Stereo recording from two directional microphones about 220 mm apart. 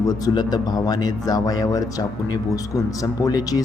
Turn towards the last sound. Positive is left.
turn(degrees=15)  # may be behind; listen again after turning